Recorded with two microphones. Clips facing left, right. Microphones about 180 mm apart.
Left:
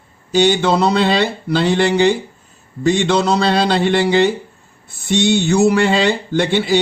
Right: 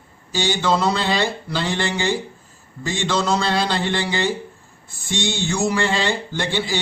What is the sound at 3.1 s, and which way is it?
Speech, 65° left (ahead or behind).